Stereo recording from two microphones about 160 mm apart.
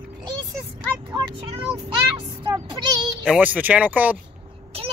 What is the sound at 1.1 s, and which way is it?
Speech, 30° right (ahead or behind).